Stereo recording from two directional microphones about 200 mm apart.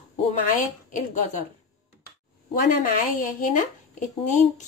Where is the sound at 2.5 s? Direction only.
45° left (ahead or behind).